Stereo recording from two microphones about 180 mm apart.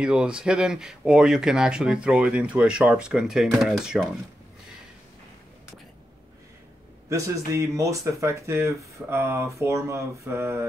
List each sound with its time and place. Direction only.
0.0 s speech: 5° right (ahead or behind)
7.1 s speech: 20° right (ahead or behind)